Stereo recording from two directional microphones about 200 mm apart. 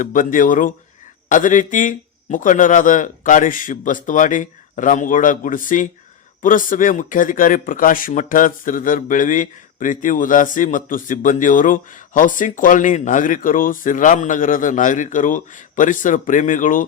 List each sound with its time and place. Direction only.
0.0 s speech: 45° left (ahead or behind)